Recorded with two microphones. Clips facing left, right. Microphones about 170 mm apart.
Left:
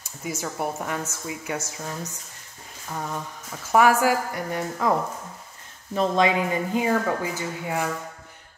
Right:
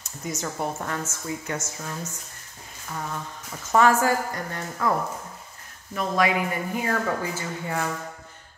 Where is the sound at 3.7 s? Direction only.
10° left (ahead or behind).